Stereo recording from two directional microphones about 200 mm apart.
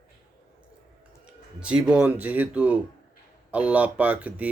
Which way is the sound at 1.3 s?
5° right (ahead or behind).